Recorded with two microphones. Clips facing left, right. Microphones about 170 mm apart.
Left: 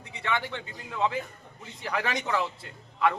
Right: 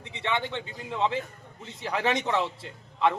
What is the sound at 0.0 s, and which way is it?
A man's voice, 20° right (ahead or behind).